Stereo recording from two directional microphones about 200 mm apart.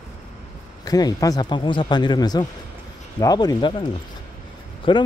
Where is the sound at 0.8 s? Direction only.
20° left (ahead or behind).